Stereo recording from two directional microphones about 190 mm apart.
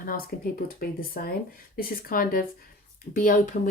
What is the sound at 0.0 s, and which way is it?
Speech, 45° left (ahead or behind).